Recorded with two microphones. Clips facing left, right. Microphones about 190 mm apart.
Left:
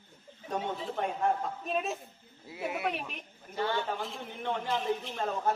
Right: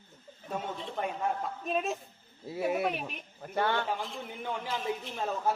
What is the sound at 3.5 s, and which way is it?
Speech, 60° right (ahead or behind).